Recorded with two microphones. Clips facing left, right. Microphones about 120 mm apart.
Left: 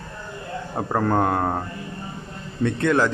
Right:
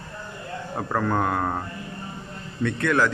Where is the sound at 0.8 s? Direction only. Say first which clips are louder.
Left 3 dB; 25° left (ahead or behind).